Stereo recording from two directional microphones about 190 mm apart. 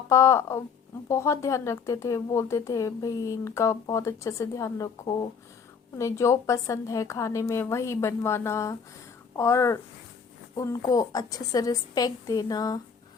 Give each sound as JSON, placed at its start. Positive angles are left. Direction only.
{"t": 0.1, "sound": "a woman's voice", "side_deg": 15}